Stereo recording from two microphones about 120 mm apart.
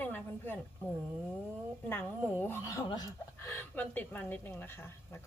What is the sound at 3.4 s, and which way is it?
A woman's voice, 15° left (ahead or behind).